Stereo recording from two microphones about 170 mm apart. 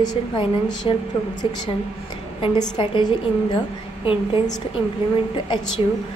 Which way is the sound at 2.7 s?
25° left (ahead or behind).